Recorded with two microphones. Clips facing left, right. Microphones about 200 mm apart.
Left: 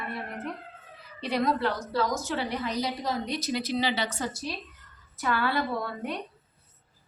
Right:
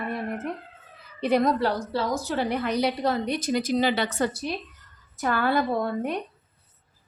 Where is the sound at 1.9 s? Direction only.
30° right (ahead or behind); by 4.5 s 60° right (ahead or behind).